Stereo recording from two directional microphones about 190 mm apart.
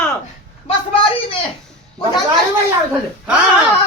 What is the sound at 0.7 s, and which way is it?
Speech, 30° left (ahead or behind).